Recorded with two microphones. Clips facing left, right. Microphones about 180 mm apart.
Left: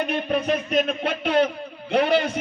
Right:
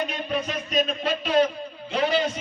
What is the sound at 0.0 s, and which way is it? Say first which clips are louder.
A man's voice: left 4 dB; 60° left (ahead or behind).